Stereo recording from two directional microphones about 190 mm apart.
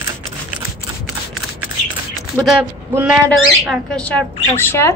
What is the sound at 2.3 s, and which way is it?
Speech, centre (ahead or behind).